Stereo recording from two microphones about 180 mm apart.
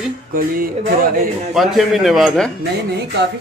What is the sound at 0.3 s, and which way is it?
Speech, 50° right (ahead or behind).